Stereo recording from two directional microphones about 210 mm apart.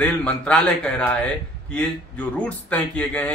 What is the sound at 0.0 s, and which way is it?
A man's voice, 5° left (ahead or behind).